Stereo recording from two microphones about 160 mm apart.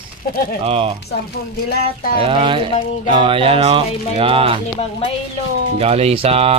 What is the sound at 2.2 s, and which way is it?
A man's voice, 30° right (ahead or behind).